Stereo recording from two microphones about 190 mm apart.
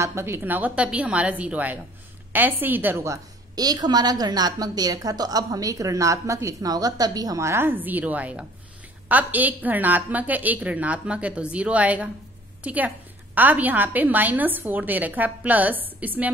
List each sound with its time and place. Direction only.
0.0 s a woman's voice: 15° right (ahead or behind)